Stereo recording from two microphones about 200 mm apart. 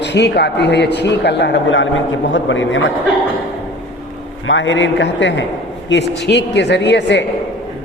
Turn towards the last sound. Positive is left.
turn(degrees=60)  # may be behind; listen again after turning